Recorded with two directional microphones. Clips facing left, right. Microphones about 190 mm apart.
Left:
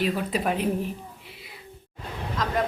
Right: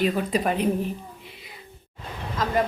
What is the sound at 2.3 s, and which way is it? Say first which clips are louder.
Speech: right 3 dB; 5° right (ahead or behind).